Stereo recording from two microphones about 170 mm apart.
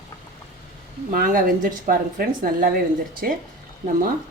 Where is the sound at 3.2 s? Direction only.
60° right (ahead or behind).